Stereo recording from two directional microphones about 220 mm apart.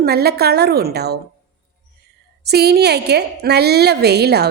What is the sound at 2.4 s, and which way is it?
A woman's voice, 45° right (ahead or behind).